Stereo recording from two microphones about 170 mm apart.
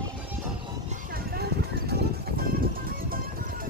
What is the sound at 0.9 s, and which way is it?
Music, 60° right (ahead or behind).